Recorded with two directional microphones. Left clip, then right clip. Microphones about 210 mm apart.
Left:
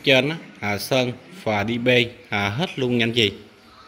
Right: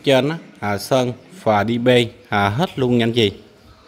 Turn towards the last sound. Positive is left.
turn(degrees=-15)  # may be behind; listen again after turning